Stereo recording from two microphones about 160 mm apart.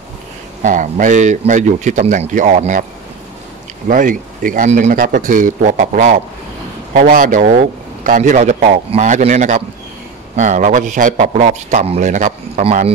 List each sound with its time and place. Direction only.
0.6 s a man's voice: 55° right (ahead or behind)
3.9 s a man's voice: 55° right (ahead or behind)